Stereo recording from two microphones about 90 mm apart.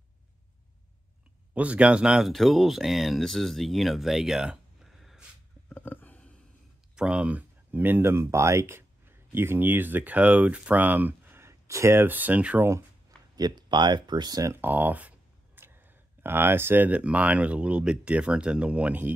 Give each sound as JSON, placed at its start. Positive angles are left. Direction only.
{"t": 1.5, "sound": "speech", "side_deg": -15}
{"t": 5.7, "sound": "a sound", "side_deg": 20}
{"t": 7.0, "sound": "speech", "side_deg": -10}
{"t": 13.4, "sound": "speech", "side_deg": -55}
{"t": 14.5, "sound": "speech", "side_deg": -20}